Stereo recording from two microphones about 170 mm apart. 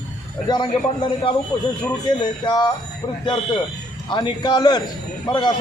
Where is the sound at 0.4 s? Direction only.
25° left (ahead or behind).